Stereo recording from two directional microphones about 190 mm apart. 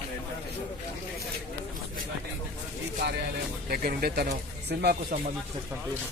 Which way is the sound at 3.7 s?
50° right (ahead or behind).